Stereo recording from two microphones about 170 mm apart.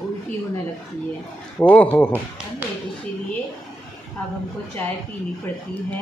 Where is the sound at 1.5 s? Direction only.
10° left (ahead or behind).